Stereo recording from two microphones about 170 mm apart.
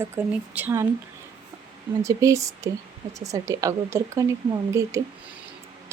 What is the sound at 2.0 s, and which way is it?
Speech, 20° right (ahead or behind).